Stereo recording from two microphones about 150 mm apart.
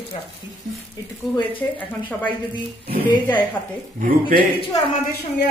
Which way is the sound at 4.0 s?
70° right (ahead or behind).